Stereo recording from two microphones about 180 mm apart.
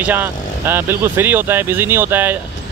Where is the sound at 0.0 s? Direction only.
10° right (ahead or behind).